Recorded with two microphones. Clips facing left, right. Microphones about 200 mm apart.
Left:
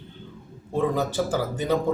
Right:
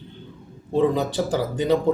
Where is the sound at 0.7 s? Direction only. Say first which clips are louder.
Right 4 dB; 20° right (ahead or behind).